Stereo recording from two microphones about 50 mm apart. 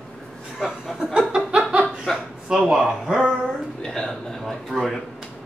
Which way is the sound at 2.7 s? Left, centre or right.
Centre.